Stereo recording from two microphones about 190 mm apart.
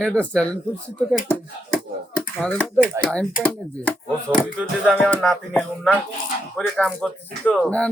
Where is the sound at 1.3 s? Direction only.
5° left (ahead or behind).